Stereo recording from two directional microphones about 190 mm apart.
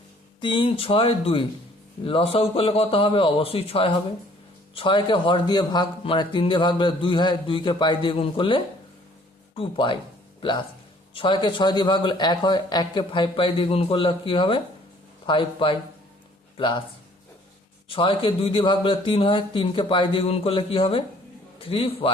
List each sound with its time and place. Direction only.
0.4 s a man's voice: 25° left (ahead or behind)
11.1 s a man's voice: 25° left (ahead or behind)
17.8 s a man's voice: 25° left (ahead or behind)